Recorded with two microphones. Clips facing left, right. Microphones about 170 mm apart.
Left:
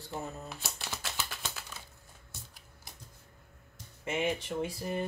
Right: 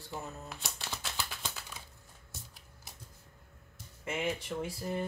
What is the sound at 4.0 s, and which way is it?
Speech, 20° left (ahead or behind).